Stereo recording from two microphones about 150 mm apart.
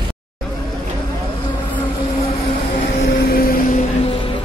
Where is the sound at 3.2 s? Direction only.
80° left.